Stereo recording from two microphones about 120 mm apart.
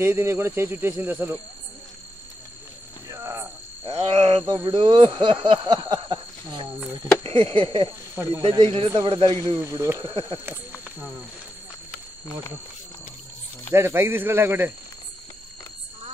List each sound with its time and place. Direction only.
0.0 s speech: 20° right (ahead or behind)
3.1 s frog: 25° right (ahead or behind)
3.8 s cricket: 60° right (ahead or behind)
4.7 s speech: 40° right (ahead or behind)
8.1 s speech: 25° right (ahead or behind)
8.4 s speech: 55° right (ahead or behind)
9.6 s speech: 25° right (ahead or behind)
13.7 s speech: 20° right (ahead or behind)